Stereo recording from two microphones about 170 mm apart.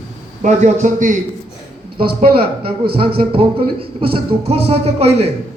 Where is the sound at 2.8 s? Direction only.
65° right (ahead or behind).